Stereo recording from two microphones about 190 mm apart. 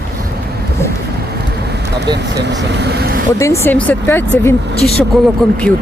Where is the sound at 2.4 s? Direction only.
65° right (ahead or behind).